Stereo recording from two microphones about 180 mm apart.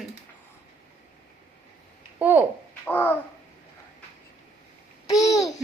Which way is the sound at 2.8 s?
10° left (ahead or behind).